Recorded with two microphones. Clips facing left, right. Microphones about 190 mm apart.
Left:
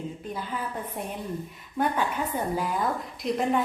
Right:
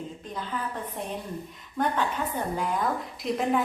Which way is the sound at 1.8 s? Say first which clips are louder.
Left 1 dB; 10° left (ahead or behind).